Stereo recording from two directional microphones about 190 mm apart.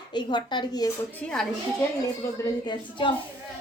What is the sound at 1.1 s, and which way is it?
Speech, 5° left (ahead or behind).